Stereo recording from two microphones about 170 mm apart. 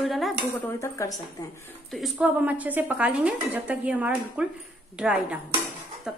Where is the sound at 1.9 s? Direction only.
5° right (ahead or behind).